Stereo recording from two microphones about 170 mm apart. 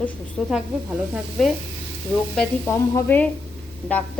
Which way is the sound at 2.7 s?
15° left (ahead or behind).